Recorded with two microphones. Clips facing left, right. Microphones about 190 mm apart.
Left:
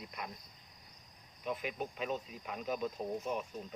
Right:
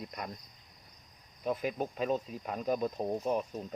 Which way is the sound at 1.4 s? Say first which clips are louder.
Right 6 dB; 40° right (ahead or behind).